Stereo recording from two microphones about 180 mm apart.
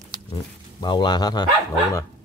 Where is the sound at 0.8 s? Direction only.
25° left (ahead or behind).